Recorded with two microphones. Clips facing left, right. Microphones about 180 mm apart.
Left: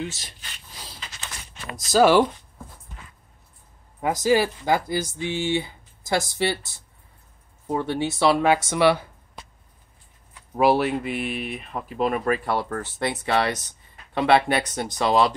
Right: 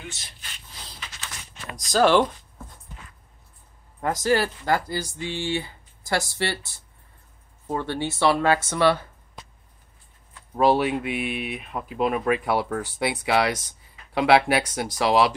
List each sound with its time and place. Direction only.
1.8 s speech: 5° left (ahead or behind)
4.0 s speech: 10° left (ahead or behind)
7.6 s speech: 15° left (ahead or behind)
10.5 s speech: 5° left (ahead or behind)